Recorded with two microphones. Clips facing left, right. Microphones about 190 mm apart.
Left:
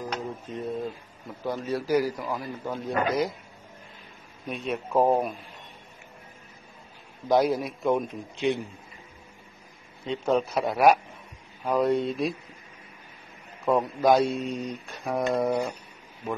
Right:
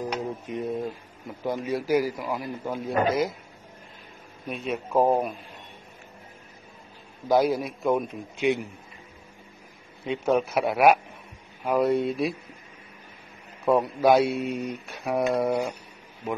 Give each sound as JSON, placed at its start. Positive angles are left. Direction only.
{"t": 0.1, "sound": "a sound", "side_deg": -15}
{"t": 1.4, "sound": "a man's voice", "side_deg": -15}
{"t": 4.5, "sound": "a man's voice", "side_deg": 0}
{"t": 7.2, "sound": "a man's voice", "side_deg": 0}
{"t": 10.0, "sound": "a man's voice", "side_deg": -15}
{"t": 13.7, "sound": "a man's voice", "side_deg": -10}